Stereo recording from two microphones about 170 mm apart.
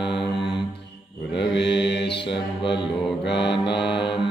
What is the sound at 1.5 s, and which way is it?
Mantra, 90° left.